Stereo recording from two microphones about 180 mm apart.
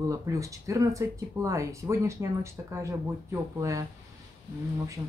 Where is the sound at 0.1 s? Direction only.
15° right (ahead or behind).